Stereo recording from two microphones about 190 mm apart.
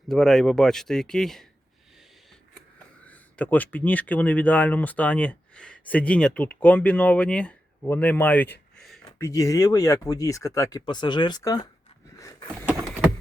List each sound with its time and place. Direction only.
0.1 s speech: 5° left (ahead or behind)
2.7 s speech: 10° left (ahead or behind)
9.1 s speech: 15° left (ahead or behind)
12.1 s vehicle: 15° left (ahead or behind)